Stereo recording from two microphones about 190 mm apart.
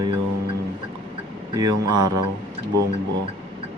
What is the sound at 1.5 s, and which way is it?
Speech, 20° right (ahead or behind).